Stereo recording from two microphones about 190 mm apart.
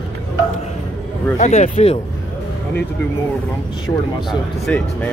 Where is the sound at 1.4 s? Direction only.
35° left (ahead or behind).